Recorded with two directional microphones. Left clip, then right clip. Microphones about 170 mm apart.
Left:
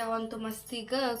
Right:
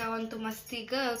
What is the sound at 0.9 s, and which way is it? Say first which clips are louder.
Speech: left 1 dB; 25° left (ahead or behind).